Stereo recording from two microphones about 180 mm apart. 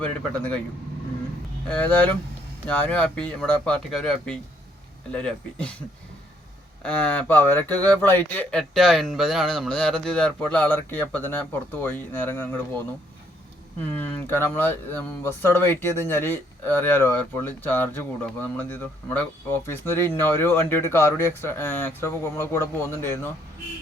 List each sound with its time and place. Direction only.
0.0 s speech: 5° left (ahead or behind)
1.6 s speech: 5° left (ahead or behind)
6.8 s speech: 5° left (ahead or behind)